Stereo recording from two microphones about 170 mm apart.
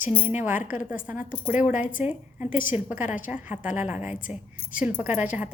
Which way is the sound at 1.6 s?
50° left (ahead or behind).